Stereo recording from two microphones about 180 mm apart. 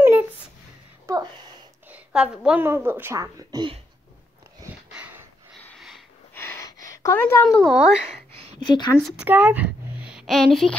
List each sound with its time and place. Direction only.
0.0 s a sound: 10° right (ahead or behind)
1.9 s a woman's voice: 5° right (ahead or behind); by 3.8 s 25° right (ahead or behind)
4.9 s a sound: 10° right (ahead or behind)
5.6 s sniff: 5° left (ahead or behind)
6.3 s gasp: 10° left (ahead or behind)
7.0 s speech: 15° left (ahead or behind)
8.5 s a woman's voice: 25° left (ahead or behind)
9.1 s speech: 10° right (ahead or behind)